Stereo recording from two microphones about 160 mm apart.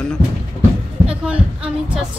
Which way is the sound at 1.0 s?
5° right (ahead or behind).